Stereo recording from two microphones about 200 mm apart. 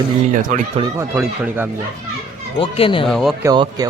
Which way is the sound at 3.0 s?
Centre (ahead or behind).